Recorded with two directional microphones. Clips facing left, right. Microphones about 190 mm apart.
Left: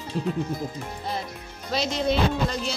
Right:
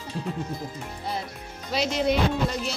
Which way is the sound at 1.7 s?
10° right (ahead or behind).